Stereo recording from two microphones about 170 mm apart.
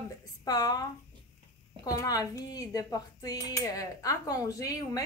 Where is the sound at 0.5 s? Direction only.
25° left (ahead or behind).